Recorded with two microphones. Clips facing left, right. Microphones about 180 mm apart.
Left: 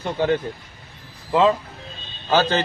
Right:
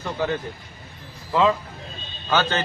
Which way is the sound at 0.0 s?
35° left (ahead or behind).